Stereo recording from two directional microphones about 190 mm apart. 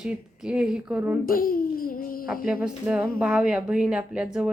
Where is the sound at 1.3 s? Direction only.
50° left (ahead or behind).